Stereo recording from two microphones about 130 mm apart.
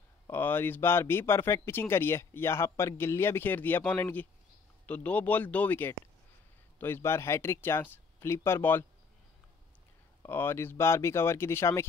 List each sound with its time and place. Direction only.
0.3 s speech: 15° left (ahead or behind)
10.2 s speech: 15° left (ahead or behind)